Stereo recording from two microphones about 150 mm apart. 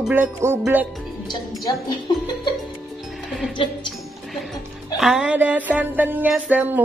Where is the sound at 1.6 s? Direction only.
25° left (ahead or behind).